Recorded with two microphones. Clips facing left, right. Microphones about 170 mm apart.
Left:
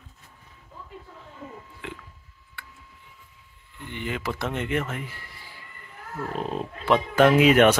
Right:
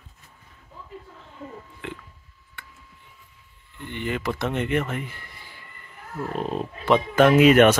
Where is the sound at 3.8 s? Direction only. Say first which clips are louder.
Right 3 dB; 55° right (ahead or behind).